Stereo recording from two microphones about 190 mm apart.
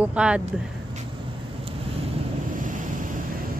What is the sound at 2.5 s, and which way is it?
Waves, 45° right (ahead or behind).